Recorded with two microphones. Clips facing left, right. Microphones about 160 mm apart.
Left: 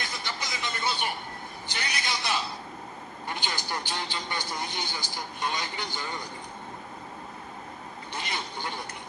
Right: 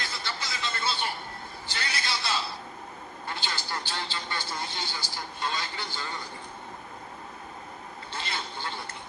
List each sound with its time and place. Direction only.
0.0 s music: 15° left (ahead or behind)
1.6 s a sound: 20° left (ahead or behind)
8.1 s quack: 15° left (ahead or behind)